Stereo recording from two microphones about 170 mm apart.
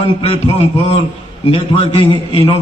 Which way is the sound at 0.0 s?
35° left (ahead or behind).